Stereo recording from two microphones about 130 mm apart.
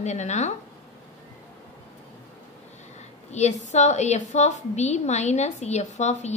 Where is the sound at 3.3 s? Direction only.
60° left (ahead or behind).